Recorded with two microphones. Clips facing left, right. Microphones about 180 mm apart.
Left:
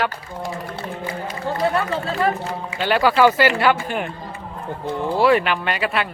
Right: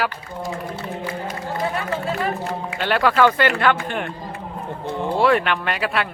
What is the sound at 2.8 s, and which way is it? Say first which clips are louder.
A man's voice: left 2 dB; centre (ahead or behind).